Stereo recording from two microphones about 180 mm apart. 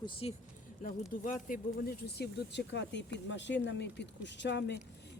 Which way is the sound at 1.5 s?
60° left (ahead or behind).